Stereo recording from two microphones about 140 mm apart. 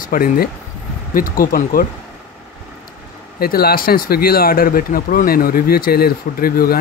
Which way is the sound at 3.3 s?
90° left.